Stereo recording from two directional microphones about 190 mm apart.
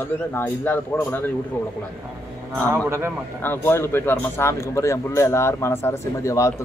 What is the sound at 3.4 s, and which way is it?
Speech, 10° left (ahead or behind).